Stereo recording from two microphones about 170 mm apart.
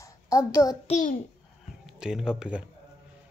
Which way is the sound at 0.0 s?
20° left (ahead or behind).